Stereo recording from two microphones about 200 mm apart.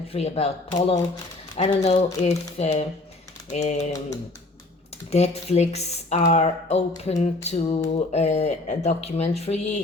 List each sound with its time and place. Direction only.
0.1 s speech: 30° left (ahead or behind)
5.1 s speech: 30° left (ahead or behind)